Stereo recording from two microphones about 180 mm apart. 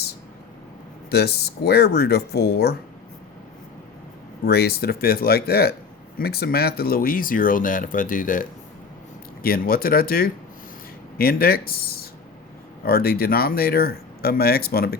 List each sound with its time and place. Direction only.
1.1 s speech: 60° left (ahead or behind)
4.4 s speech: 65° left (ahead or behind)